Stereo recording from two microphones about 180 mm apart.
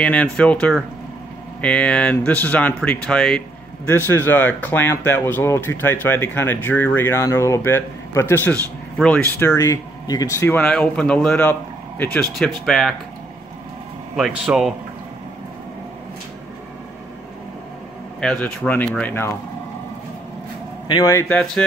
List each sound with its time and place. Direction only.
0.0 s speech: 5° left (ahead or behind)
14.1 s speech: 5° right (ahead or behind)
18.2 s speech: 5° left (ahead or behind)
20.9 s speech: 15° left (ahead or behind)